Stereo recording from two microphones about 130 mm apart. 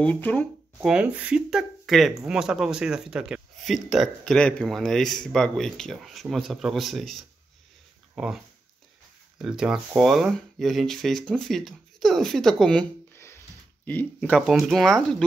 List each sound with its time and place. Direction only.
0.0 s speech: 10° left (ahead or behind)
0.8 s speech: 5° right (ahead or behind)
9.4 s speech: 5° right (ahead or behind)
13.1 s a sound: 20° left (ahead or behind)
13.8 s speech: 15° left (ahead or behind)
14.4 s speech: 5° right (ahead or behind)